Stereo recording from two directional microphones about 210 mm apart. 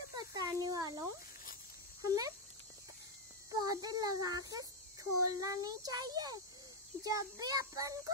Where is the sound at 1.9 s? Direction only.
15° right (ahead or behind).